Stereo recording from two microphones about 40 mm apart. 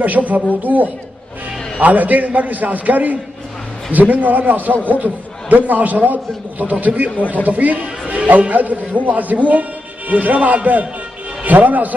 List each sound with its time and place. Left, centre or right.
0.0 s a man's voice: right